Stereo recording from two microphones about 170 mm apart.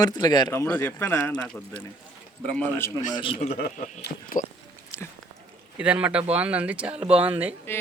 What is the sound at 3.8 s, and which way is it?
Speech, 50° left (ahead or behind).